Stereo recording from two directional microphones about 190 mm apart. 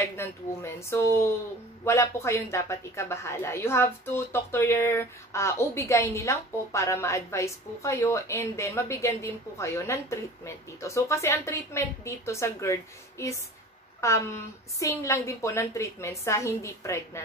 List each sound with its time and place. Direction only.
0.0 s a woman's voice: 15° left (ahead or behind)